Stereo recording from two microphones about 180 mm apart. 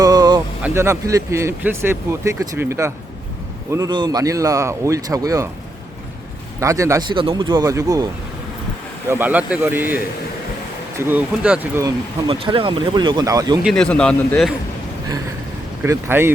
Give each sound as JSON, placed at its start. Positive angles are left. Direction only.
{"t": 0.0, "sound": "a sound", "side_deg": -20}
{"t": 0.6, "sound": "speech", "side_deg": -15}
{"t": 6.6, "sound": "speech", "side_deg": -15}
{"t": 7.2, "sound": "speech", "side_deg": -25}
{"t": 10.9, "sound": "speech", "side_deg": -10}
{"t": 12.3, "sound": "speech", "side_deg": -30}
{"t": 13.6, "sound": "speech", "side_deg": 0}
{"t": 15.8, "sound": "speech", "side_deg": -10}